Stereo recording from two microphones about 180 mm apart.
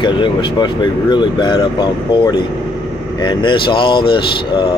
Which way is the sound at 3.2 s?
25° left (ahead or behind).